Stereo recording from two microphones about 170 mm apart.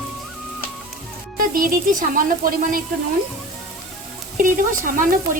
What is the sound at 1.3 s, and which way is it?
Music, 55° right (ahead or behind).